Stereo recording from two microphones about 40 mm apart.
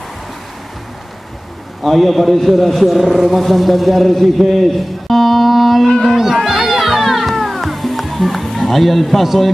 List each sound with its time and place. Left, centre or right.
1.8 s a man's voice: centre
6.0 s music: centre